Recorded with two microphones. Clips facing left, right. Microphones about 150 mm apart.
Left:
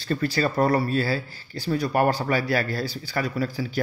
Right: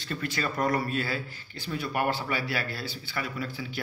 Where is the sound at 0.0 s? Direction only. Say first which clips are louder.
Left 8 dB; 35° left (ahead or behind).